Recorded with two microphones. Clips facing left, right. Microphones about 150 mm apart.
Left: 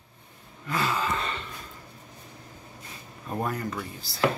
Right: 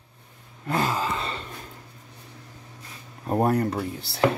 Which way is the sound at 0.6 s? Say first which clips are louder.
Right 3 dB; 45° right (ahead or behind).